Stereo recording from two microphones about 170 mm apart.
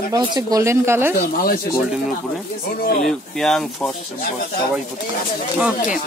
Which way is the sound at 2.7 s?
60° left (ahead or behind).